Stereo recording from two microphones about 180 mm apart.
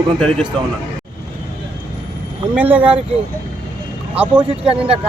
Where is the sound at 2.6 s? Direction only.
10° right (ahead or behind).